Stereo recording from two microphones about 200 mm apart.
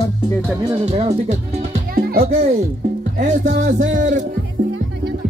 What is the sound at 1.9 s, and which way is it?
Music, 50° right (ahead or behind).